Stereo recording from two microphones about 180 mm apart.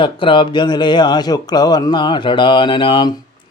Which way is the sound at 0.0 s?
30° left (ahead or behind).